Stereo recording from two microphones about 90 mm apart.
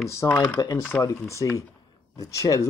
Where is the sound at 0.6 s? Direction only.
50° left (ahead or behind).